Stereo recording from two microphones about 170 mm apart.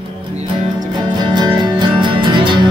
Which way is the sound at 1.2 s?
25° right (ahead or behind).